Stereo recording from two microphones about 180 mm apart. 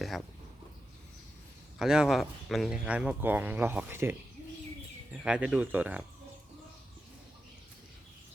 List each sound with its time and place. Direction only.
0.0 s a sound: centre (ahead or behind)
1.8 s speech: 5° right (ahead or behind)
5.1 s speech: 5° right (ahead or behind)